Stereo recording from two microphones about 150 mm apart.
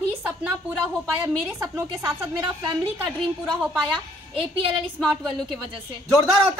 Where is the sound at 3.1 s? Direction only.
Centre (ahead or behind).